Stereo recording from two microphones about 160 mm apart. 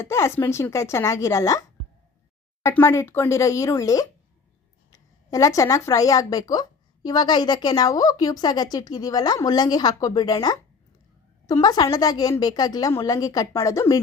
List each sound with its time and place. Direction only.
0.0 s speech: 15° left (ahead or behind)
2.6 s a woman's voice: 15° left (ahead or behind)